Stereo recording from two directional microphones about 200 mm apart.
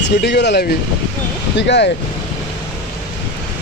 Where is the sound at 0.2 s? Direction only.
55° left (ahead or behind).